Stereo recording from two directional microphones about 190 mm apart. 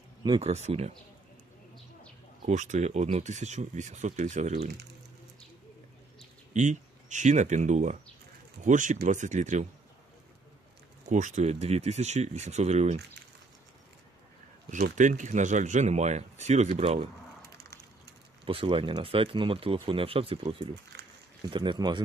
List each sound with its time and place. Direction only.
0.2 s speech: 30° right (ahead or behind)
2.4 s speech: 40° right (ahead or behind)
6.5 s speech: 40° right (ahead or behind)
11.1 s speech: 40° right (ahead or behind)
14.7 s speech: 40° right (ahead or behind)
18.4 s speech: 30° right (ahead or behind)
20.9 s a sound: 60° right (ahead or behind)
21.5 s speech: 25° right (ahead or behind)